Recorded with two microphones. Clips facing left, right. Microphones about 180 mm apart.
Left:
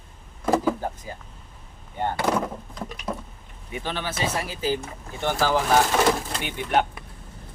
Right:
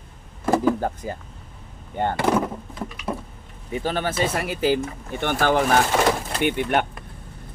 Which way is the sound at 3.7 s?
45° right (ahead or behind).